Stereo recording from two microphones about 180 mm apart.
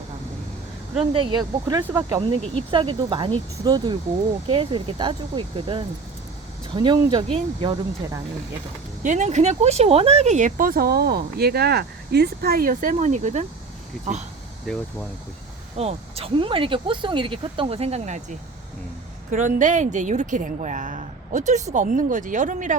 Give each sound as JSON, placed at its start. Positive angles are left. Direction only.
{"t": 1.1, "sound": "speech", "side_deg": -25}
{"t": 9.0, "sound": "speech", "side_deg": -40}
{"t": 15.8, "sound": "speech", "side_deg": -35}